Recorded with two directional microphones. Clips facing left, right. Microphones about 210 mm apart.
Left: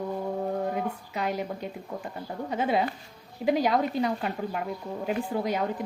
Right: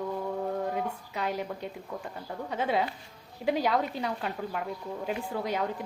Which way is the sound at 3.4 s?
10° left (ahead or behind).